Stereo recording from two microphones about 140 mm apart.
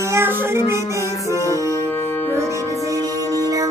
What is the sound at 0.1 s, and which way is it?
Music, 20° right (ahead or behind).